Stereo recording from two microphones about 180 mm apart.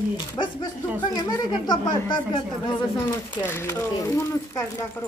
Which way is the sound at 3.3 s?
10° left (ahead or behind).